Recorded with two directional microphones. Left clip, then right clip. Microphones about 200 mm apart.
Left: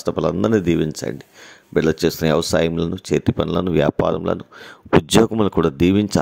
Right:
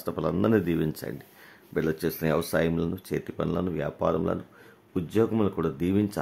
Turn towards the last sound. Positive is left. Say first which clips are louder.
# left 10 dB
turn(degrees=40)  # may be behind; listen again after turning